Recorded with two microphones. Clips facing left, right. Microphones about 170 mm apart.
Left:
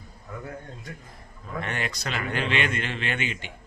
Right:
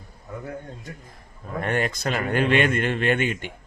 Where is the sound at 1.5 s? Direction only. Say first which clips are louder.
Right 7 dB; 45° right (ahead or behind).